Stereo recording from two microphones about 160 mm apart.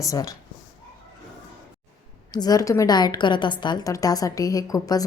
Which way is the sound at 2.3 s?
25° left (ahead or behind).